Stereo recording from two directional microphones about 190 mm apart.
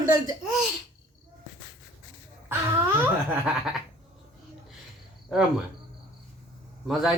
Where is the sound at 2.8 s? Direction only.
10° right (ahead or behind).